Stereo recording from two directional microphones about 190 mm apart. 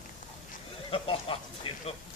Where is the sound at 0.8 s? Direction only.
30° left (ahead or behind).